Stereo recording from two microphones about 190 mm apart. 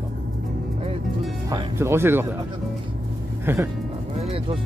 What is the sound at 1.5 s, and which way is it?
Speech, 15° right (ahead or behind).